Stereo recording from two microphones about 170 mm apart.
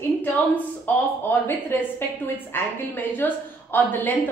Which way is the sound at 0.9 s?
10° left (ahead or behind).